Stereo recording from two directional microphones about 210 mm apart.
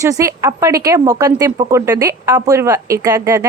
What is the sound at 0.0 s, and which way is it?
Speech, 15° right (ahead or behind).